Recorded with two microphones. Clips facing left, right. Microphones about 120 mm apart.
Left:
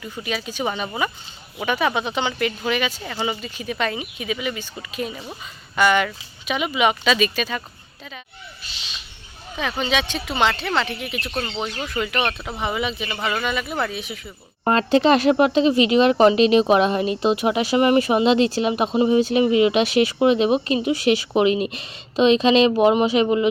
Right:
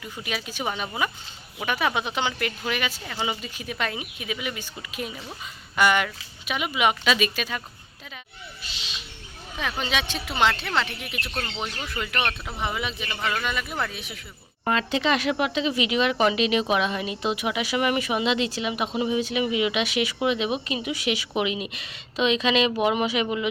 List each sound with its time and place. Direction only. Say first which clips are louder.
0.0 s speech: left 5 dB; 5° right (ahead or behind)
9.6 s speech: left 5 dB; centre (ahead or behind)
14.6 s speech: left 7 dB; 40° left (ahead or behind)